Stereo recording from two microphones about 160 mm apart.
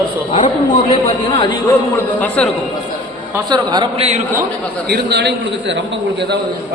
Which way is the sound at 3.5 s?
25° right (ahead or behind).